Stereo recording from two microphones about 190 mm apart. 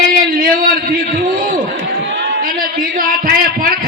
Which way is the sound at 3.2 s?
50° right (ahead or behind).